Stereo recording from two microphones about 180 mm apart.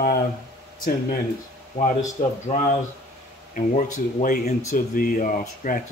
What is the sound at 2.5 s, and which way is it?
Speech, 35° left (ahead or behind).